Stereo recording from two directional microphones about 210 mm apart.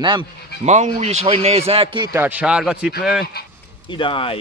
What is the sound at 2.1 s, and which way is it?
Speech, 10° right (ahead or behind).